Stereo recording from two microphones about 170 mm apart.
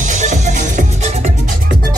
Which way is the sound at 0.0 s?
45° right (ahead or behind).